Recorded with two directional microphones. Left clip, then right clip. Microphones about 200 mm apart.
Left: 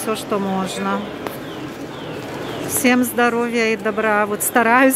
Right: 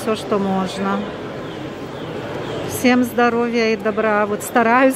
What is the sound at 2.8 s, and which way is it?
Speech, centre (ahead or behind).